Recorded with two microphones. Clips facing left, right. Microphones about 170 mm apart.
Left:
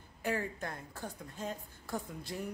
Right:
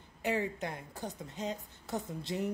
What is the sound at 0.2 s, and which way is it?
Speech, 20° right (ahead or behind).